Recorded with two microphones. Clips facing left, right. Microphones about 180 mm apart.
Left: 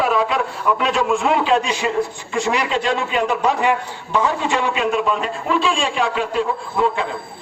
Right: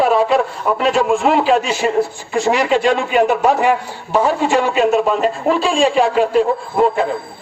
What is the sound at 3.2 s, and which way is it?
A man's voice, 35° right (ahead or behind).